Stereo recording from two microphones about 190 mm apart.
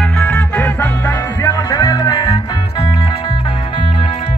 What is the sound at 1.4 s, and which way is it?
Music, 20° left (ahead or behind).